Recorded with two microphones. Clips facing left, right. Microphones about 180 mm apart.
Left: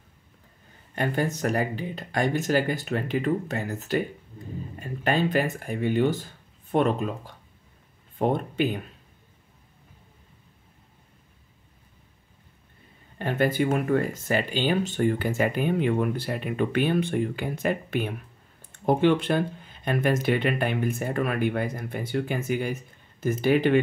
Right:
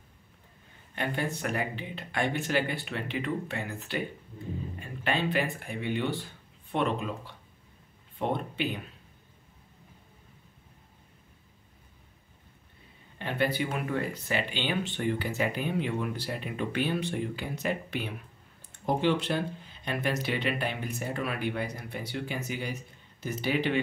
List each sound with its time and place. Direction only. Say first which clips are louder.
0.9 s speech: left 5 dB; 45° left (ahead or behind)
13.2 s speech: left 6 dB; 45° left (ahead or behind)